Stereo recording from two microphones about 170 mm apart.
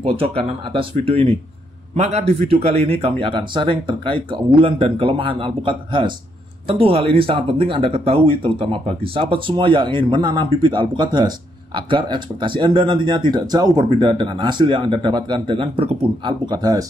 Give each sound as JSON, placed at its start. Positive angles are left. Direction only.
{"t": 0.0, "sound": "speech", "side_deg": -35}